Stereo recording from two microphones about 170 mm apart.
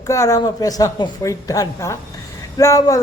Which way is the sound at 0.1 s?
20° left (ahead or behind).